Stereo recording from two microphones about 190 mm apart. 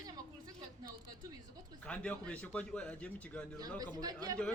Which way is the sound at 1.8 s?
5° left (ahead or behind).